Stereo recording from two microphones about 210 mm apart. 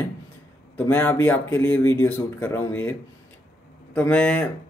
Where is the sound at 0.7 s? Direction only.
10° left (ahead or behind).